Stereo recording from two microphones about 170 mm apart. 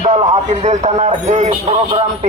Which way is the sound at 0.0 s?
35° right (ahead or behind).